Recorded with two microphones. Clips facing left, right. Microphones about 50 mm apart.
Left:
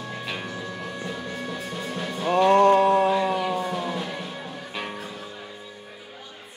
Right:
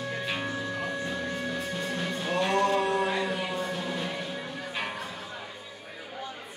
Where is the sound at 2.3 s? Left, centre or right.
Left.